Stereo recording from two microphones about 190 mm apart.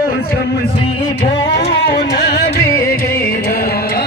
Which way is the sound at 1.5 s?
60° left (ahead or behind).